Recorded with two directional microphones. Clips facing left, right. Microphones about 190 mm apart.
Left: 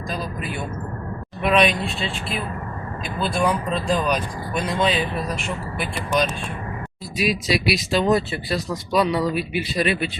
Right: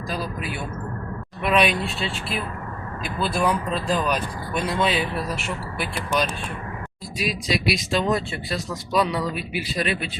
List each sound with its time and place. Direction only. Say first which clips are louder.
1.4 s speech: left 2 dB; 5° right (ahead or behind)